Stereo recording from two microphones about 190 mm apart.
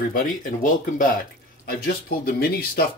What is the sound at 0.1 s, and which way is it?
Speech, 45° left (ahead or behind).